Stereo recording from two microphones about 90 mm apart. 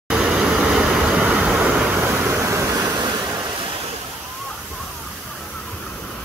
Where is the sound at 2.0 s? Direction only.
25° right (ahead or behind).